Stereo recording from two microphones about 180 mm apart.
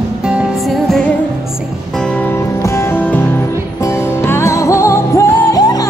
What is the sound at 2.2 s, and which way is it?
Music, 15° left (ahead or behind).